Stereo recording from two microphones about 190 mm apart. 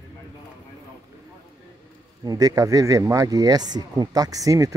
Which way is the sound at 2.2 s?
20° right (ahead or behind).